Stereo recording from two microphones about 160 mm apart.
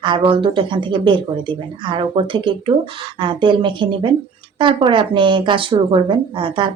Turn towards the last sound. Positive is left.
turn(degrees=-30)  # may be behind; listen again after turning